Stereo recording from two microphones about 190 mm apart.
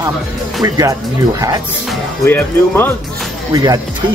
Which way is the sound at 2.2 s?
10° left (ahead or behind).